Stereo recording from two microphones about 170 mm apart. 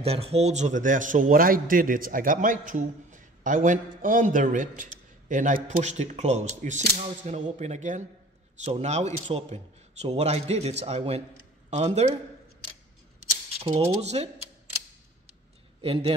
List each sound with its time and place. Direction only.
0.0 s a man's voice: 35° right (ahead or behind)
13.5 s a man's voice: 35° right (ahead or behind)
15.8 s a man's voice: 35° right (ahead or behind)